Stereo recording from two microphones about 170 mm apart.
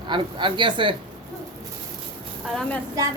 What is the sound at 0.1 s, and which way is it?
Speech, 30° right (ahead or behind).